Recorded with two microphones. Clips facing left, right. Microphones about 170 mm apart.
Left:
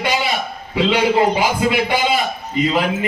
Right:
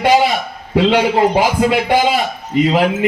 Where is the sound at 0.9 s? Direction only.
80° right.